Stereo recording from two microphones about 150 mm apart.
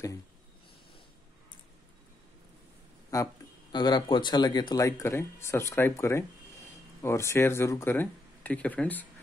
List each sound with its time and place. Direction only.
3.1 s speech: 25° left (ahead or behind)